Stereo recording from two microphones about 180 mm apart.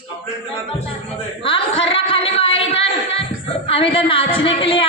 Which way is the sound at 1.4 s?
30° left (ahead or behind).